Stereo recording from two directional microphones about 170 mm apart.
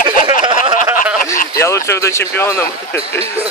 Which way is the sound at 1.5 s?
15° left (ahead or behind).